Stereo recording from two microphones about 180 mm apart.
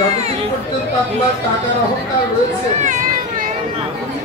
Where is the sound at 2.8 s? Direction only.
45° right (ahead or behind).